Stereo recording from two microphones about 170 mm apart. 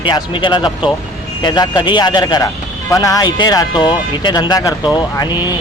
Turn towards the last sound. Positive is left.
turn(degrees=25)  # may be behind; listen again after turning